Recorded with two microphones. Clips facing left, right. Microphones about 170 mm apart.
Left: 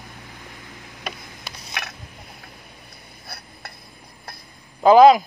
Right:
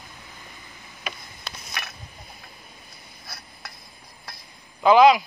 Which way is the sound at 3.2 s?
60° left (ahead or behind).